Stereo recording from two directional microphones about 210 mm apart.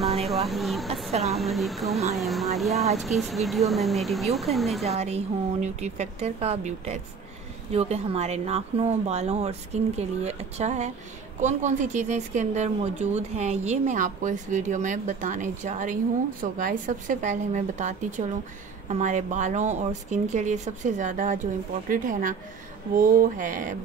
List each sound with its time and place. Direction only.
0.2 s speech: centre (ahead or behind)
4.8 s speech: 30° right (ahead or behind)